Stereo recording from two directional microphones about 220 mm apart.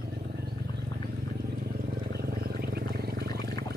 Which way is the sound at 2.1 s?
45° right (ahead or behind).